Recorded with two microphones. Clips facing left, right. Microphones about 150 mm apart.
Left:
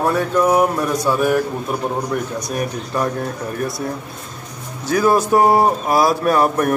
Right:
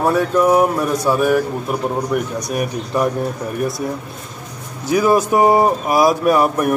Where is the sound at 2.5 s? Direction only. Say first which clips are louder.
Right 3 dB; 15° right (ahead or behind).